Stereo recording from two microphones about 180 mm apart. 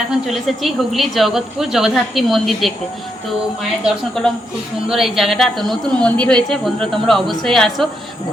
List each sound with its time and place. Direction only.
0.1 s a woman's voice: centre (ahead or behind)